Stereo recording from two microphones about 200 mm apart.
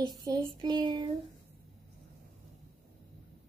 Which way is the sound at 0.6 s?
20° right (ahead or behind).